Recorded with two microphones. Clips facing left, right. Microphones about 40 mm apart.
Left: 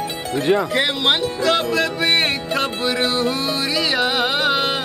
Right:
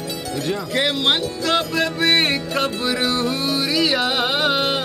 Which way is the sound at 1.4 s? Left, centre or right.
Centre.